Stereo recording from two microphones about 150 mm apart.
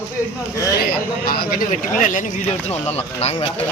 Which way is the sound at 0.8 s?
90° left.